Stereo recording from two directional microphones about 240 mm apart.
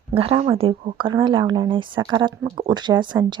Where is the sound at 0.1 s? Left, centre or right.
Right.